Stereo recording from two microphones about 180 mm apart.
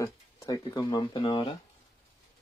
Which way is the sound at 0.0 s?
20° left (ahead or behind).